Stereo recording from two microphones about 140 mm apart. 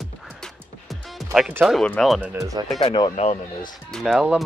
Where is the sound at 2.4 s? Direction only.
25° right (ahead or behind).